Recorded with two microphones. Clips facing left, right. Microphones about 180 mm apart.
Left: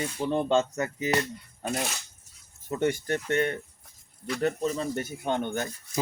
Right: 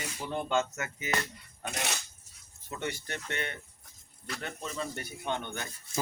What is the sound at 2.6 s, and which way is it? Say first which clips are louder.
Speech: left 10 dB; 45° left (ahead or behind).